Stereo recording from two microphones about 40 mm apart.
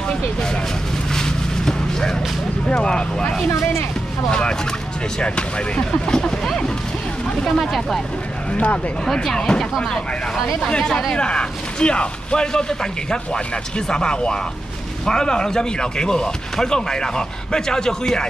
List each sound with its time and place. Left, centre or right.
1.1 s vehicle: centre
2.7 s vehicle: left
4.3 s speech: left; by 8.0 s centre
9.0 s speech: centre